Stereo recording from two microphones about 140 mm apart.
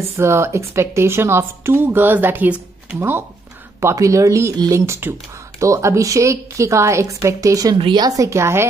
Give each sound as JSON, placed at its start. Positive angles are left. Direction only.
{"t": 0.2, "sound": "a woman's voice", "side_deg": -20}
{"t": 7.7, "sound": "a woman's voice", "side_deg": -35}